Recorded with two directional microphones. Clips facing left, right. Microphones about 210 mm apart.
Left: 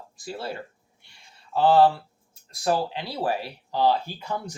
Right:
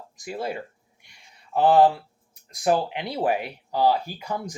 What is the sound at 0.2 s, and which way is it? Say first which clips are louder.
Speech: right 3 dB; 15° right (ahead or behind).